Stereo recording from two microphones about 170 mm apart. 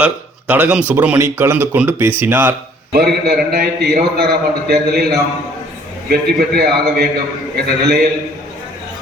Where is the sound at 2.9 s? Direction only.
70° right (ahead or behind).